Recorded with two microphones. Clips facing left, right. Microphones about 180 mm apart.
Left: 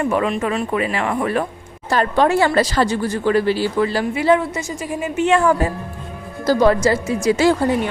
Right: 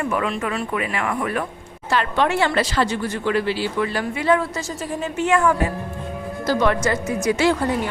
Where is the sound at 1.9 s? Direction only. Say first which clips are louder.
Left 4 dB; 40° left (ahead or behind); by 5.3 s 15° left (ahead or behind).